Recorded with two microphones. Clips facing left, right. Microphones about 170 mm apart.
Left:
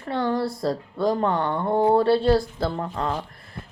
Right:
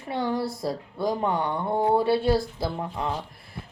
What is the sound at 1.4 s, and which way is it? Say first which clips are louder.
Speech: left 4 dB; 50° left (ahead or behind).